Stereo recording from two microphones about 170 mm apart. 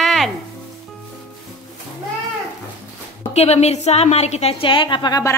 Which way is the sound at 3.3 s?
40° left (ahead or behind).